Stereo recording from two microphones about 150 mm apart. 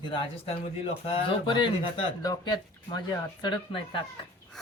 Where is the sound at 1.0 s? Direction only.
35° left (ahead or behind).